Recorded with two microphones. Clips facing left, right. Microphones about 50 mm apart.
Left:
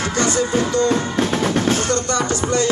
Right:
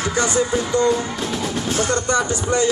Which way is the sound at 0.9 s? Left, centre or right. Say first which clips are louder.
Left 4 dB; left.